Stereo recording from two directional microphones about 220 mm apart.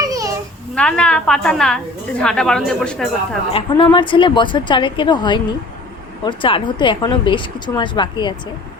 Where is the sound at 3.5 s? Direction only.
25° left (ahead or behind).